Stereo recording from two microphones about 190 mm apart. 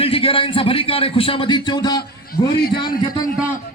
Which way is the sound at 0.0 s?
30° left (ahead or behind).